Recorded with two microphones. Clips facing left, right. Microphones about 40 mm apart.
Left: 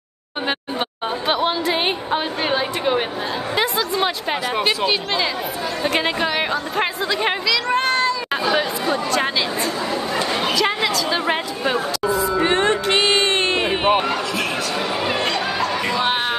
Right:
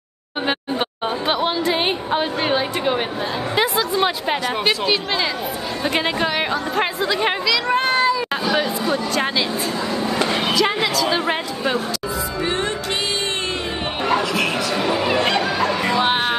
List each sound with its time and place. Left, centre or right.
0.5 s chatter: centre
3.5 s a woman's voice: centre
10.5 s a woman's voice: centre
12.4 s music: left
14.0 s basketball bounce: right
15.2 s music: right